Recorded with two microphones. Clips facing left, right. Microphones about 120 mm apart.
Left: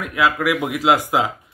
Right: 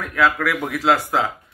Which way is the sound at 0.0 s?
15° left (ahead or behind).